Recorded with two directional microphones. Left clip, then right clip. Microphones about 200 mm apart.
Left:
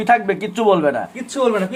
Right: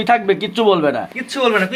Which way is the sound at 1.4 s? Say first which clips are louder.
Right 2 dB; centre (ahead or behind).